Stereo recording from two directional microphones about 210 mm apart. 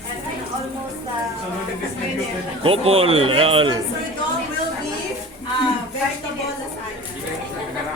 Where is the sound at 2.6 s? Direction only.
25° right (ahead or behind).